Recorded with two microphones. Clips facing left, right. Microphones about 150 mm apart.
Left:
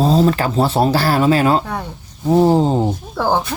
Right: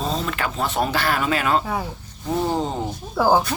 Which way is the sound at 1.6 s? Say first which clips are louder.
Left 1 dB; 5° right (ahead or behind).